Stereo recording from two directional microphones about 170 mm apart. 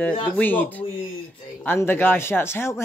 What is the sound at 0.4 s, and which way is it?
Speech, 10° left (ahead or behind).